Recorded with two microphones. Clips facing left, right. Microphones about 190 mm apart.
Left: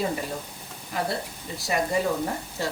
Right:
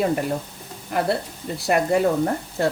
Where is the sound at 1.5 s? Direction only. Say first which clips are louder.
Right 6 dB; 60° right (ahead or behind).